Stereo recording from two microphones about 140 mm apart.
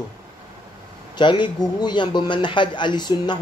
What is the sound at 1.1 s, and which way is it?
A man's voice, 35° left (ahead or behind).